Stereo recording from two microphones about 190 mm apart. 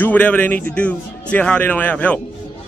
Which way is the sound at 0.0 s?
10° left (ahead or behind).